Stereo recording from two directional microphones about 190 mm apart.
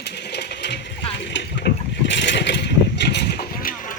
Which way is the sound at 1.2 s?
65° left (ahead or behind).